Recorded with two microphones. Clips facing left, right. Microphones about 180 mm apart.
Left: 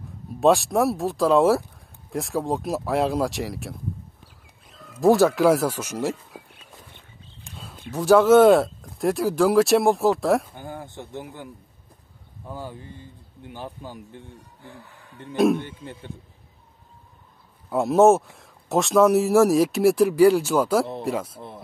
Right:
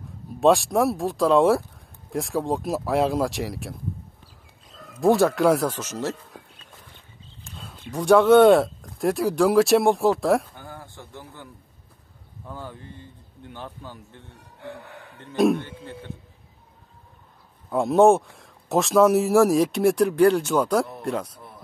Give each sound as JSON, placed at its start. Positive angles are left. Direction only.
{"t": 0.4, "sound": "speech", "side_deg": 0}
{"t": 5.0, "sound": "speech", "side_deg": 0}
{"t": 7.4, "sound": "a sound", "side_deg": 10}
{"t": 7.9, "sound": "speech", "side_deg": 5}
{"t": 10.5, "sound": "a sound", "side_deg": 20}
{"t": 12.4, "sound": "speech", "side_deg": 10}
{"t": 15.3, "sound": "speech", "side_deg": 0}
{"t": 15.6, "sound": "speech", "side_deg": 15}
{"t": 17.6, "sound": "speech", "side_deg": 0}
{"t": 21.4, "sound": "speech", "side_deg": 25}